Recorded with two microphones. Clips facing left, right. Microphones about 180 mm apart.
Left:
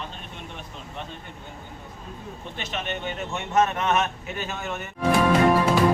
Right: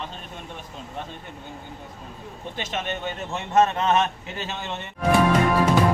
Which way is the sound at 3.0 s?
30° right (ahead or behind).